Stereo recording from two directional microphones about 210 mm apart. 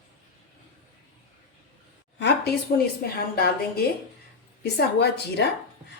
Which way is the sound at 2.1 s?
50° left (ahead or behind).